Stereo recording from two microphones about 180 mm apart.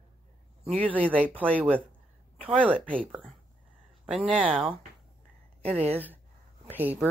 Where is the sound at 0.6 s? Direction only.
10° left (ahead or behind).